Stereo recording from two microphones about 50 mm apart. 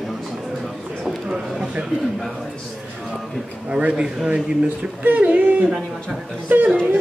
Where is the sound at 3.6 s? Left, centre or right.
Centre.